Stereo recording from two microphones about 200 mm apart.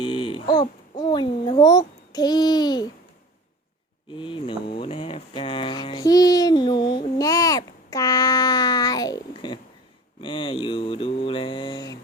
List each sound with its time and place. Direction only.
0.0 s speech: 25° left (ahead or behind)
4.1 s a sound: 25° left (ahead or behind)
10.2 s mantra: 25° left (ahead or behind)